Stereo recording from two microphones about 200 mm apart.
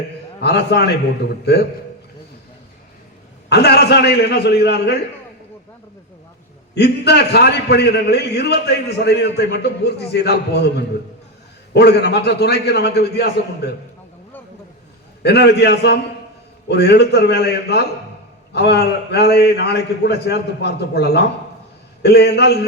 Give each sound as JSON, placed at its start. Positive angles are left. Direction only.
{"t": 0.4, "sound": "a man's voice", "side_deg": 55}
{"t": 3.5, "sound": "a man's voice", "side_deg": 55}
{"t": 6.7, "sound": "a man's voice", "side_deg": 55}
{"t": 11.7, "sound": "a man's voice", "side_deg": 55}
{"t": 15.2, "sound": "a man's voice", "side_deg": 55}